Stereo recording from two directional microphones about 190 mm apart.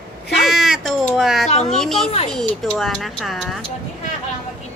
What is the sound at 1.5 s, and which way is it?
Speech, 35° left (ahead or behind).